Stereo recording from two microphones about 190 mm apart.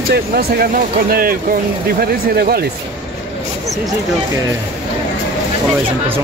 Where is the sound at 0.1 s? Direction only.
50° right (ahead or behind).